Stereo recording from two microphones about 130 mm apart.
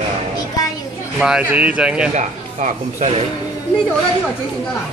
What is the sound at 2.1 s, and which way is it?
Speech, 70° right (ahead or behind).